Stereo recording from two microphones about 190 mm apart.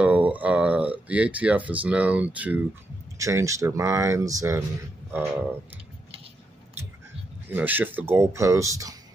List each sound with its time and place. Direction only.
0.0 s a sound: 5° right (ahead or behind)
3.2 s speech: 15° right (ahead or behind)
7.5 s speech: 10° right (ahead or behind)